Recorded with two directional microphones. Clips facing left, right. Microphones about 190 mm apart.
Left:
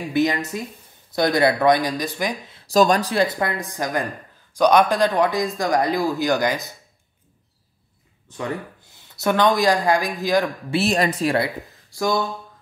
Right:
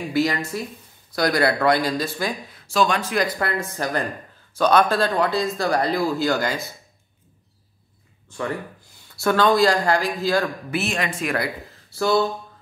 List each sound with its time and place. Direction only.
0.1 s speech: 20° left (ahead or behind)
2.6 s speech: 40° left (ahead or behind); by 6.7 s 15° left (ahead or behind)
9.1 s speech: 20° left (ahead or behind)
10.7 s speech: 35° left (ahead or behind)
11.9 s speech: 15° left (ahead or behind)